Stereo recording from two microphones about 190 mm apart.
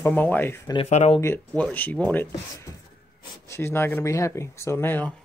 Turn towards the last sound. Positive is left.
turn(degrees=10)  # may be behind; listen again after turning